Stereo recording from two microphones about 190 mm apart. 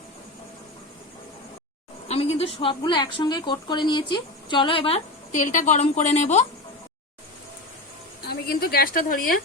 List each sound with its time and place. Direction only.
2.0 s a woman's voice: 30° left (ahead or behind)
5.3 s a woman's voice: 40° left (ahead or behind)
8.2 s a woman's voice: 55° left (ahead or behind)